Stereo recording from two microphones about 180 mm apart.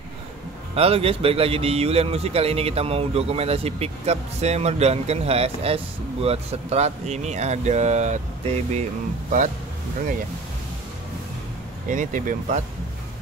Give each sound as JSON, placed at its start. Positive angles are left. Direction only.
{"t": 0.7, "sound": "speech", "side_deg": -35}
{"t": 11.9, "sound": "speech", "side_deg": -45}